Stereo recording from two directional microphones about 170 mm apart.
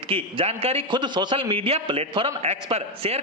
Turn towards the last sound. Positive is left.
turn(degrees=-35)  # may be behind; listen again after turning